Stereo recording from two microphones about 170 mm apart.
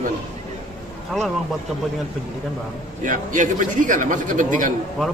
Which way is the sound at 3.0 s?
50° right (ahead or behind).